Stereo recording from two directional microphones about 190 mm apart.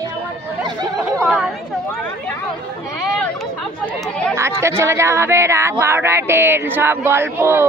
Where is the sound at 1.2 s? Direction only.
Centre (ahead or behind).